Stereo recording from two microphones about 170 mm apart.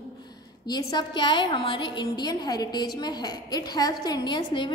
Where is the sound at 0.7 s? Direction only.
25° left (ahead or behind).